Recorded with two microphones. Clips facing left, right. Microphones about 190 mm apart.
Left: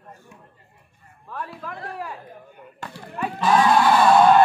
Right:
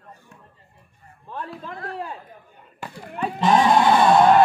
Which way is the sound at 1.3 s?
25° right (ahead or behind).